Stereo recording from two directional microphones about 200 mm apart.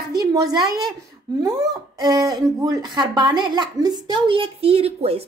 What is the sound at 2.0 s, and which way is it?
Speech, 20° right (ahead or behind).